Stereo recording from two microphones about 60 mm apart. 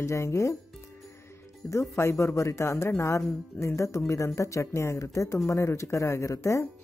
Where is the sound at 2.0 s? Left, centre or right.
Left.